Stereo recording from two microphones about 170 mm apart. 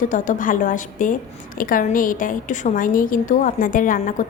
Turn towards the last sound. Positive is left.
turn(degrees=50)  # may be behind; listen again after turning